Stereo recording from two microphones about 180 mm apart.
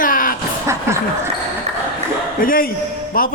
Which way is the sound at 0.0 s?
50° left (ahead or behind).